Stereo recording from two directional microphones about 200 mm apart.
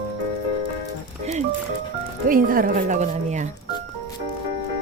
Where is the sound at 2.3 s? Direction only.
45° right (ahead or behind).